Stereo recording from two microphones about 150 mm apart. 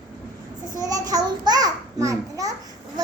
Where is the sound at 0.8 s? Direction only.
25° right (ahead or behind).